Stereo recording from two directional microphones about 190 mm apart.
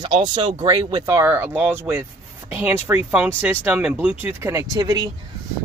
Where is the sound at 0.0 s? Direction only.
25° right (ahead or behind).